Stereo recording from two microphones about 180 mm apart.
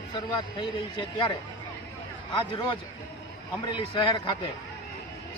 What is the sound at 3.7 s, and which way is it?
Speech, 25° left (ahead or behind).